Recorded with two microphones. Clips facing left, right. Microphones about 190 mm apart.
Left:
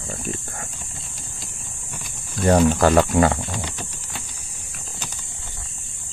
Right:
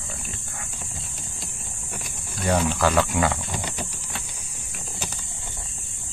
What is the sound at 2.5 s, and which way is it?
Speech, 45° left (ahead or behind).